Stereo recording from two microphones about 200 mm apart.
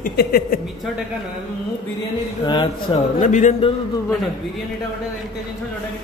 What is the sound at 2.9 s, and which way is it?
Speech, 35° left (ahead or behind).